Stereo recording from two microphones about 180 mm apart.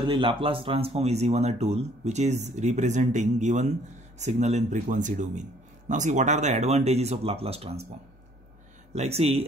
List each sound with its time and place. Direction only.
0.0 s speech: 25° right (ahead or behind)
8.9 s speech: 35° right (ahead or behind)